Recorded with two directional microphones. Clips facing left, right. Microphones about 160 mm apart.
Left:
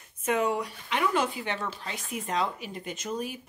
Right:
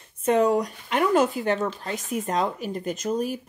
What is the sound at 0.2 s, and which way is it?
Speech, 35° right (ahead or behind).